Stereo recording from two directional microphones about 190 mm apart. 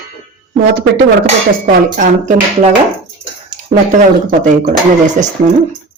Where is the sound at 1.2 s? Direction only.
45° right (ahead or behind).